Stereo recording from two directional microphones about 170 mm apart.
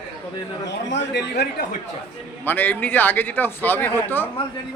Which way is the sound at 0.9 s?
80° left.